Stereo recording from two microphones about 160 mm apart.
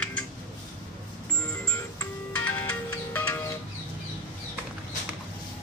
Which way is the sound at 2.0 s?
10° left (ahead or behind).